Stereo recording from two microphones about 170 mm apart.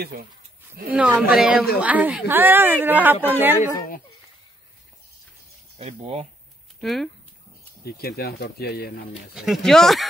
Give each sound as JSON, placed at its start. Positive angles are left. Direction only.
{"t": 0.0, "sound": "speech", "side_deg": -60}
{"t": 0.9, "sound": "speech", "side_deg": -10}
{"t": 5.8, "sound": "speech", "side_deg": -40}
{"t": 6.8, "sound": "speech", "side_deg": 0}
{"t": 7.8, "sound": "speech", "side_deg": 65}
{"t": 9.3, "sound": "speech", "side_deg": 0}